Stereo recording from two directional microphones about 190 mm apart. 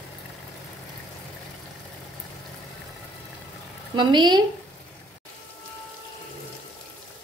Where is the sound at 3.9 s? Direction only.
25° right (ahead or behind).